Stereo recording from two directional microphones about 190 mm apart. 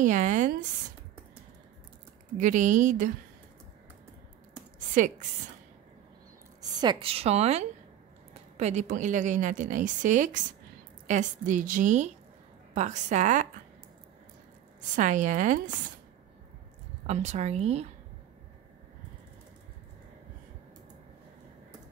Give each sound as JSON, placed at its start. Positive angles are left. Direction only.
{"t": 0.0, "sound": "a woman's voice", "side_deg": -40}
{"t": 2.3, "sound": "speech", "side_deg": -45}
{"t": 4.7, "sound": "a sound", "side_deg": -40}
{"t": 6.8, "sound": "a woman's voice", "side_deg": -25}
{"t": 15.0, "sound": "a woman's voice", "side_deg": -40}
{"t": 17.0, "sound": "a woman's voice", "side_deg": -35}